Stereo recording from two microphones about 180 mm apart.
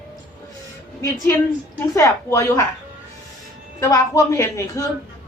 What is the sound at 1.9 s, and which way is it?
Speech, 15° left (ahead or behind).